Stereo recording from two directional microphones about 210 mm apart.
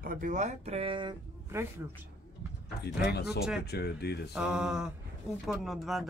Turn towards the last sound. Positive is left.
turn(degrees=0)  # may be behind; listen again after turning